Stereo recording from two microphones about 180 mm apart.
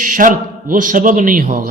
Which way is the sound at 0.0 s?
50° right (ahead or behind).